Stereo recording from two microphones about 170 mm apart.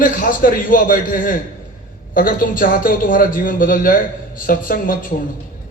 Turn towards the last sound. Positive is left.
turn(degrees=55)  # may be behind; listen again after turning